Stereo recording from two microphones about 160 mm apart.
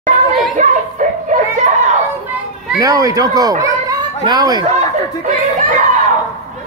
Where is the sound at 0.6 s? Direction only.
50° right (ahead or behind).